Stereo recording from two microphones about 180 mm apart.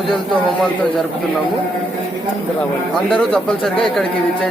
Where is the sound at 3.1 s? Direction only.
5° left (ahead or behind).